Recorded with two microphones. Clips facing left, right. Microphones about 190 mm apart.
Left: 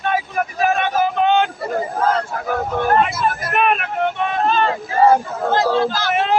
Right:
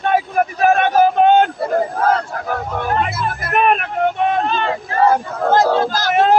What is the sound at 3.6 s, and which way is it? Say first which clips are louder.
Vehicle: right 4 dB; 35° right (ahead or behind).